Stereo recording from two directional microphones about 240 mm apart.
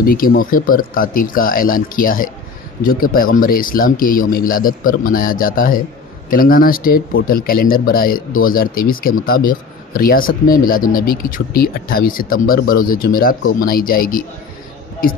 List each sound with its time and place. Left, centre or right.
0.0 s speech: left